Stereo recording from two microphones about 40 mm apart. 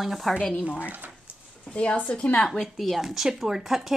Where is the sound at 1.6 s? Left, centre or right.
Left.